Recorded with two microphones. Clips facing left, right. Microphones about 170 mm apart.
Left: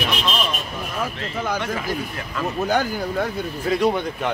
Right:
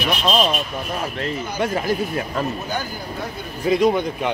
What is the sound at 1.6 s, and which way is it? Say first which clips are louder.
Speech: right 5 dB; 40° right (ahead or behind).